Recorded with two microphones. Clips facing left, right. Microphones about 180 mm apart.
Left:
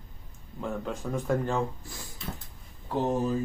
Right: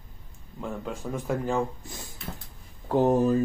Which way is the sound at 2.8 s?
50° right (ahead or behind).